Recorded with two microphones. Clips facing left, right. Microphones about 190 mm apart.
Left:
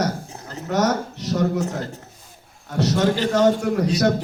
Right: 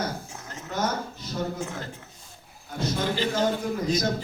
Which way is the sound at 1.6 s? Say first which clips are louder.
Left 8 dB; 40° left (ahead or behind).